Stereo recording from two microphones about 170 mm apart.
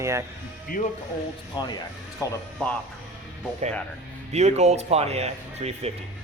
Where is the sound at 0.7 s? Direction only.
50° left (ahead or behind).